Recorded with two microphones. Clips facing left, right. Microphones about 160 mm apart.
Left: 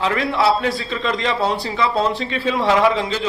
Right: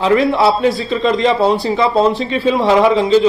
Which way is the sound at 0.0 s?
30° right (ahead or behind).